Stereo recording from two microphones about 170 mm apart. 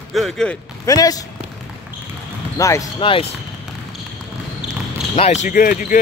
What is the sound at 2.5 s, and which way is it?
Speech, 20° left (ahead or behind).